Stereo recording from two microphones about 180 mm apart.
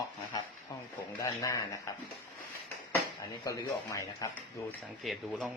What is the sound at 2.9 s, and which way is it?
Speech, 15° left (ahead or behind).